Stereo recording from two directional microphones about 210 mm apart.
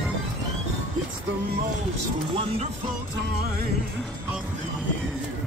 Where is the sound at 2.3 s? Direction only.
30° right (ahead or behind).